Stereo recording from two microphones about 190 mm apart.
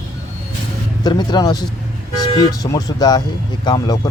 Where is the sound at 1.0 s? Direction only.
20° left (ahead or behind).